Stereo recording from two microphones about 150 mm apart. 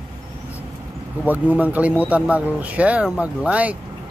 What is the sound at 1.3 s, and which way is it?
Speech, 10° right (ahead or behind).